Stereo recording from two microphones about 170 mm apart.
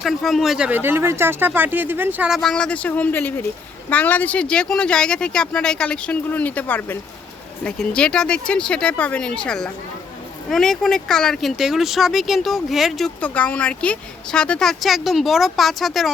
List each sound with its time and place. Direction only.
0.0 s speech: centre (ahead or behind)